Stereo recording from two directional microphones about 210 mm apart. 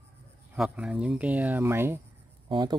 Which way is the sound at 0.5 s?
5° right (ahead or behind).